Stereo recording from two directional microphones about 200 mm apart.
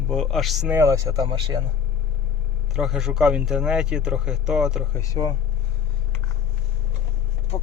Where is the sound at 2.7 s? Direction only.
Centre (ahead or behind).